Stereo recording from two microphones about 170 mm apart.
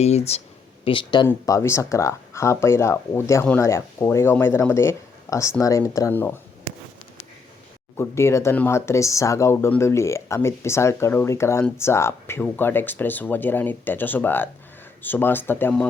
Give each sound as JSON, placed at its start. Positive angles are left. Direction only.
{"t": 0.0, "sound": "speech", "side_deg": 40}
{"t": 0.9, "sound": "speech", "side_deg": 30}
{"t": 1.3, "sound": "speech", "side_deg": 15}
{"t": 7.9, "sound": "speech", "side_deg": 15}